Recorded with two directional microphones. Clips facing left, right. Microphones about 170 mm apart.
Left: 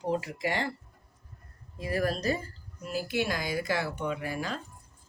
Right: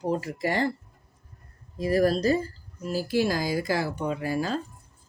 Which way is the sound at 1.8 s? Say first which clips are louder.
Right 7 dB; 35° right (ahead or behind).